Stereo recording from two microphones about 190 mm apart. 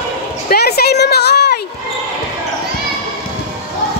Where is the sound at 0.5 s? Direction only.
55° left (ahead or behind).